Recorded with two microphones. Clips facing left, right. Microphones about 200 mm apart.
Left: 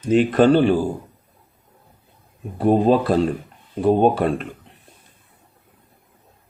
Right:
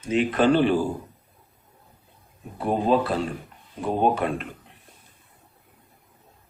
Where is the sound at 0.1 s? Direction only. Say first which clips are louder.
Left 6 dB; 40° left (ahead or behind).